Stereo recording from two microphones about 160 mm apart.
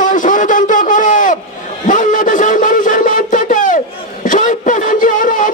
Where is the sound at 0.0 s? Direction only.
55° left (ahead or behind).